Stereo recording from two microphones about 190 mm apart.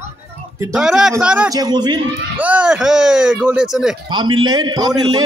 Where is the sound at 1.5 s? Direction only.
20° right (ahead or behind).